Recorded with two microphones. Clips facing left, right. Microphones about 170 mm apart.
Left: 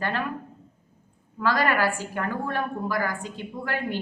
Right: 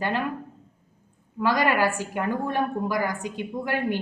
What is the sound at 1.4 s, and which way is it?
A woman's voice, 20° right (ahead or behind).